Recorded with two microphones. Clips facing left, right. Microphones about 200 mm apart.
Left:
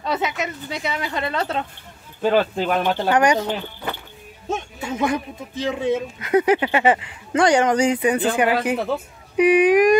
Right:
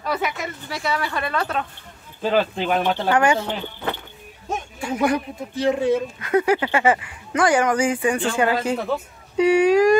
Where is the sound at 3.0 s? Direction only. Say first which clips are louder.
Left 2 dB; 20° left (ahead or behind).